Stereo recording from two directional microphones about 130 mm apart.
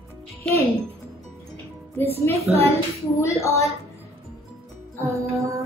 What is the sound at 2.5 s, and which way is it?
Child singing, 50° right (ahead or behind).